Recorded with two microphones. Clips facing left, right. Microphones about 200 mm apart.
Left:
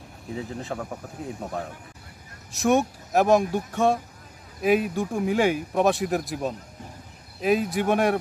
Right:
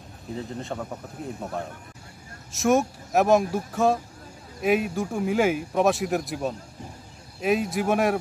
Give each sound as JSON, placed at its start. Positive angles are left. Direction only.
{"t": 0.3, "sound": "speech", "side_deg": 5}
{"t": 2.5, "sound": "speech", "side_deg": 0}